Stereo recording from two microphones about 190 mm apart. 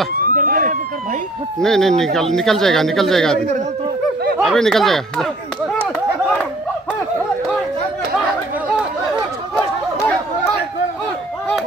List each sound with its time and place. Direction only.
0.1 s police car: 50° right (ahead or behind)
1.6 s speech: 5° left (ahead or behind)
4.4 s speech: centre (ahead or behind)